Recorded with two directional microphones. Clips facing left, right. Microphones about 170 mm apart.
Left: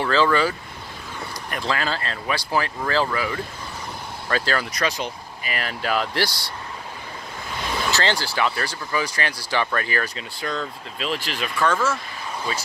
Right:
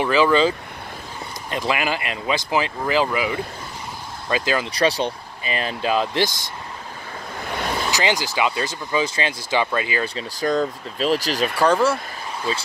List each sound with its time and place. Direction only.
0.0 s speech: 15° right (ahead or behind)
4.7 s speech: 30° right (ahead or behind)
7.9 s speech: 15° right (ahead or behind)
10.0 s speech: 35° right (ahead or behind)